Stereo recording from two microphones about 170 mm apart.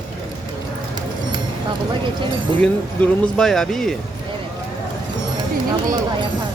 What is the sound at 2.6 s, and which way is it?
Speech, 5° left (ahead or behind).